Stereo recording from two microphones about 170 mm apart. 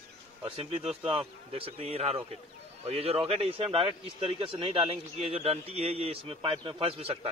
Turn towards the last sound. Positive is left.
turn(degrees=-35)  # may be behind; listen again after turning